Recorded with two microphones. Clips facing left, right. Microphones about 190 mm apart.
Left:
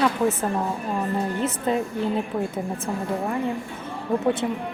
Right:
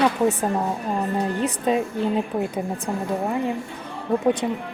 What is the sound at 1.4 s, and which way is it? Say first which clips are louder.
Speech: right 3 dB; 15° right (ahead or behind).